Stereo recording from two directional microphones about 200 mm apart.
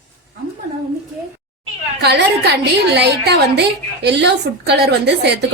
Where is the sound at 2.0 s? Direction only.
55° right (ahead or behind).